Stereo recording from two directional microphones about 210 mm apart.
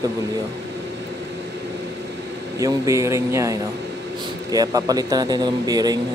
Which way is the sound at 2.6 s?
15° right (ahead or behind).